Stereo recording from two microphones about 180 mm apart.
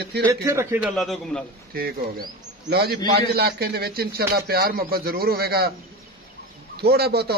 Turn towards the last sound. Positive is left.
turn(degrees=-60)  # may be behind; listen again after turning